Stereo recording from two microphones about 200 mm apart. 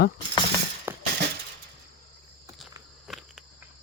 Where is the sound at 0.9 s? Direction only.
10° right (ahead or behind).